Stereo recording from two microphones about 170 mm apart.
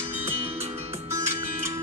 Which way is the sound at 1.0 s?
15° right (ahead or behind).